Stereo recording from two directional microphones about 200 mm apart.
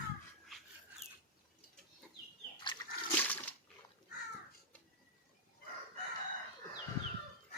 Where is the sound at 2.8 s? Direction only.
20° left (ahead or behind).